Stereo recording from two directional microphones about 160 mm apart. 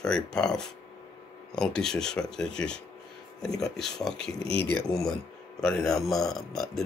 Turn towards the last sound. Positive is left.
turn(degrees=0)  # may be behind; listen again after turning